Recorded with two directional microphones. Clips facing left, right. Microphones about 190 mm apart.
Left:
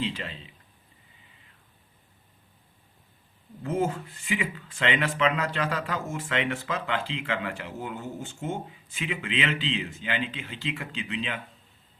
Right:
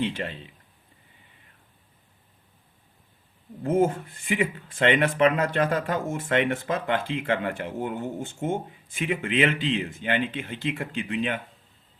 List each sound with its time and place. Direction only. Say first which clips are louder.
0.0 s speech: right 4 dB; 50° right (ahead or behind)
3.7 s speech: right 5 dB; 50° right (ahead or behind)